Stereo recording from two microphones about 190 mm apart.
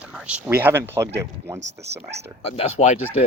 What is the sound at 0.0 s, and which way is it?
Speech, 5° right (ahead or behind).